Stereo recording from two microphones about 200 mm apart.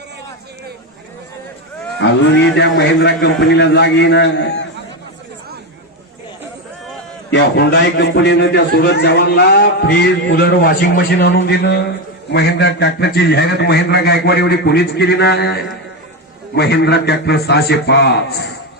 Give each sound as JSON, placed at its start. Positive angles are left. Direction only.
{"t": 2.6, "sound": "a man's voice", "side_deg": 60}
{"t": 7.3, "sound": "a man's voice", "side_deg": 55}
{"t": 11.3, "sound": "a man's voice", "side_deg": 60}